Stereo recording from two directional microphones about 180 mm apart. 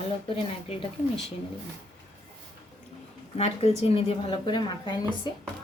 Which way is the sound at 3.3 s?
35° left (ahead or behind).